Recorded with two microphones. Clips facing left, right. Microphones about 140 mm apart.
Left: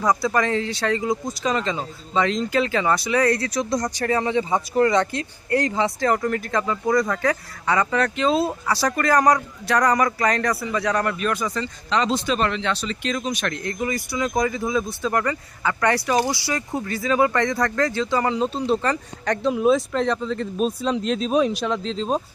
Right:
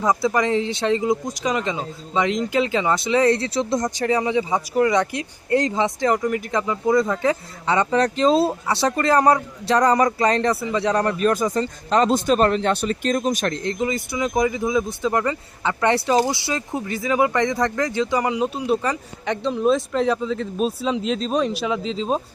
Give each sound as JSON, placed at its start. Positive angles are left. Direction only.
{"t": 0.0, "sound": "speech", "side_deg": -20}
{"t": 3.9, "sound": "a man's voice", "side_deg": -15}
{"t": 13.5, "sound": "speech", "side_deg": -30}
{"t": 19.4, "sound": "speech", "side_deg": 5}